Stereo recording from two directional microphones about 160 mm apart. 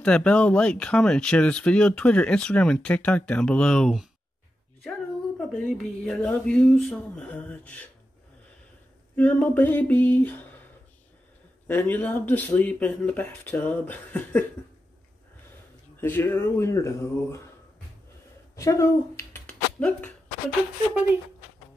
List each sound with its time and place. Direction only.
0.0 s speech: 5° left (ahead or behind)
5.4 s speech: centre (ahead or behind)
9.1 s speech: 10° left (ahead or behind)
11.6 s speech: 10° left (ahead or behind)
16.0 s speech: 15° left (ahead or behind)
18.6 s speech: 20° left (ahead or behind)